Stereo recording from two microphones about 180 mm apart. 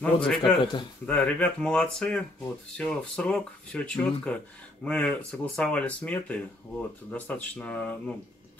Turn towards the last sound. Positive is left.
turn(degrees=10)  # may be behind; listen again after turning